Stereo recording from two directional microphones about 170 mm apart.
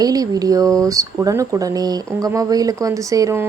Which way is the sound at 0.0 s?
20° right (ahead or behind).